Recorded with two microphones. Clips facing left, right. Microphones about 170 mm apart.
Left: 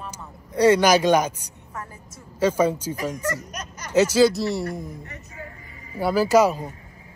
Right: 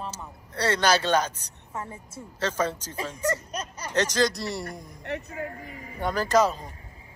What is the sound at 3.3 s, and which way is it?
Speech, 30° right (ahead or behind).